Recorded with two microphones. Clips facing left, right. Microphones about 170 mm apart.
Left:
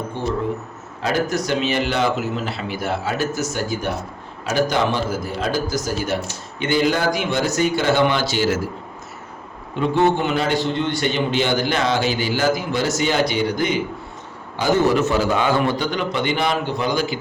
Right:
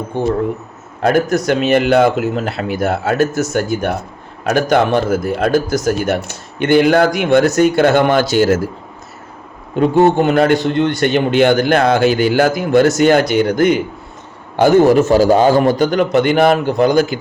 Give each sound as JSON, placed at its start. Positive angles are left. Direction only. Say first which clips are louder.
{"t": 0.1, "sound": "a man's voice", "louder": "right 7 dB", "side_deg": -50}
{"t": 9.7, "sound": "a man's voice", "louder": "right 7 dB", "side_deg": -45}